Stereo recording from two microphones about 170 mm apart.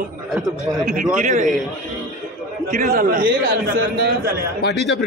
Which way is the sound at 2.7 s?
60° right (ahead or behind).